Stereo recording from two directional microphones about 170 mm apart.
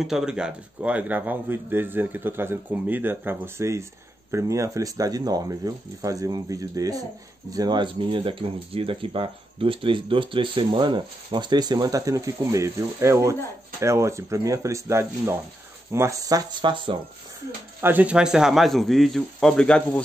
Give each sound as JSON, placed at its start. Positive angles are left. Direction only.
{"t": 0.0, "sound": "speech", "side_deg": -5}
{"t": 17.7, "sound": "speech", "side_deg": -10}